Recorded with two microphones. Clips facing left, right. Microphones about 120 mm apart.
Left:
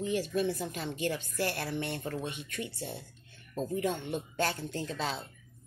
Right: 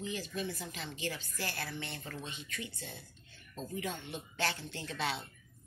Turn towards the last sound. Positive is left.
turn(degrees=35)  # may be behind; listen again after turning